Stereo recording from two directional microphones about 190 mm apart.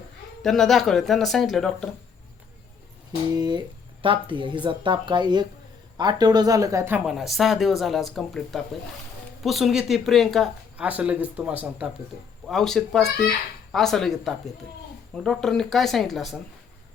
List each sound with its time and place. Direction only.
0.4 s speech: centre (ahead or behind)
3.3 s a woman's voice: 20° right (ahead or behind); by 16.4 s centre (ahead or behind)